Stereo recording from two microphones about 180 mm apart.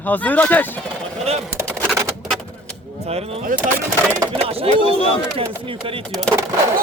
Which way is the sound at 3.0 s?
35° right (ahead or behind).